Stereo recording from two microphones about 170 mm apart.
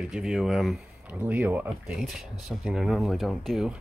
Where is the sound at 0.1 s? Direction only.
Centre (ahead or behind).